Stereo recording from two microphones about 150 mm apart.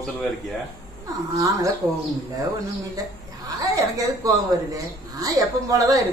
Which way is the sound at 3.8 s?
25° right (ahead or behind).